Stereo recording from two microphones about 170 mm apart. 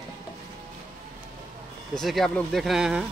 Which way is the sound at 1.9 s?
Centre (ahead or behind).